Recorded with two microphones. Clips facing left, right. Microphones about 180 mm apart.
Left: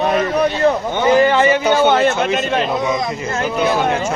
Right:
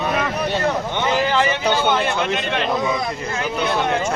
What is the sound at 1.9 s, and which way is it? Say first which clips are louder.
Speech: left 5 dB; 45° left (ahead or behind).